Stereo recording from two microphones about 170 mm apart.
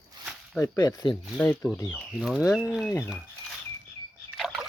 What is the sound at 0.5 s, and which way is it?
Speech, 20° left (ahead or behind).